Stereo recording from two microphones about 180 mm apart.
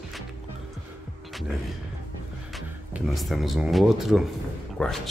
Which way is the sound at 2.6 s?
Centre (ahead or behind).